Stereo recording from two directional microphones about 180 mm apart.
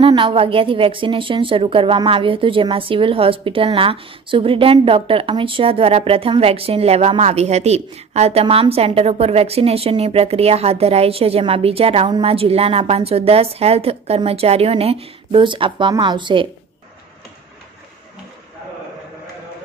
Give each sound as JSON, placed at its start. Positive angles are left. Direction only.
{"t": 0.1, "sound": "a woman's voice", "side_deg": -30}